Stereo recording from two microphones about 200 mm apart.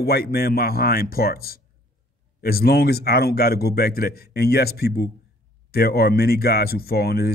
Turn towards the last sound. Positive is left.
turn(degrees=50)  # may be behind; listen again after turning